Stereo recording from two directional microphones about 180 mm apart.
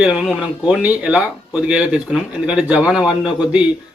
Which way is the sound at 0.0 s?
5° right (ahead or behind).